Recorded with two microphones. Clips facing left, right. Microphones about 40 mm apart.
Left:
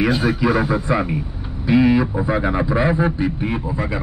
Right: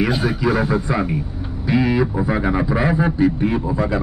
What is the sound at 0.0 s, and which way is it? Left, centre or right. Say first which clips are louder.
Speech: left 1 dB; centre.